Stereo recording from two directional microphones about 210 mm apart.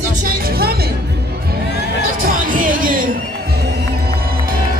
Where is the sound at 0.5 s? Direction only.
45° right (ahead or behind).